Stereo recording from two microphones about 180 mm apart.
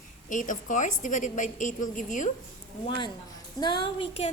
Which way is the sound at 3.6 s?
25° left (ahead or behind).